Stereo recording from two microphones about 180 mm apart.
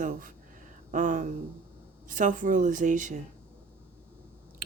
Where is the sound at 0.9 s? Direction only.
45° right (ahead or behind).